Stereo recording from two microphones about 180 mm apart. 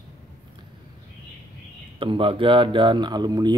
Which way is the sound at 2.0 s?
30° right (ahead or behind).